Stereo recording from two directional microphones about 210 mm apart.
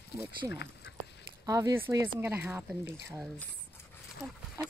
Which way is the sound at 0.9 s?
55° left (ahead or behind).